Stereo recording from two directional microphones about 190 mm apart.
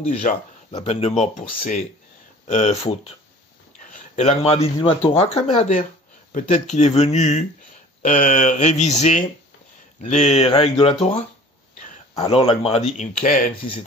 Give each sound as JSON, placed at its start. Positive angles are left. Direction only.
{"t": 0.0, "sound": "speech", "side_deg": 35}
{"t": 0.8, "sound": "mantra", "side_deg": 35}
{"t": 4.1, "sound": "mantra", "side_deg": 35}